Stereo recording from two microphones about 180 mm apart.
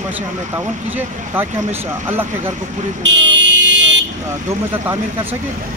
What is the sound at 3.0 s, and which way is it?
Vehicle, 80° right.